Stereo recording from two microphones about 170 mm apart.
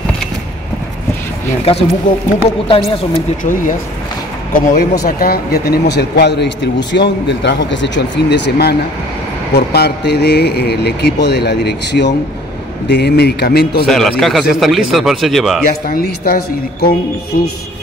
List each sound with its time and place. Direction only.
1.6 s speech: 35° left (ahead or behind)
4.6 s speech: 55° left (ahead or behind)
5.0 s speech: 65° left (ahead or behind)
13.8 s speech: centre (ahead or behind)
15.9 s speech: 60° left (ahead or behind)